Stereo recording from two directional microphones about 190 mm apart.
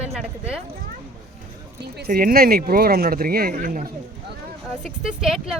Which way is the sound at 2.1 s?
50° right (ahead or behind).